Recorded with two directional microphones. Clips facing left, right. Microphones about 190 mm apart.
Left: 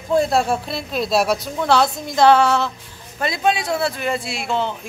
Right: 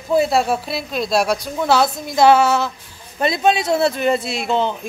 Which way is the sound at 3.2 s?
20° right (ahead or behind).